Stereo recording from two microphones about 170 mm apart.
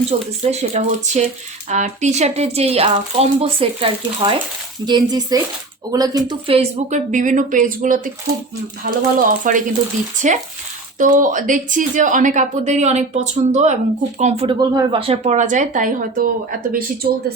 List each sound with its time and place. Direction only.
0.4 s a woman's voice: 45° right (ahead or behind)
14.6 s a woman's voice: 25° right (ahead or behind); by 17.3 s 60° right (ahead or behind)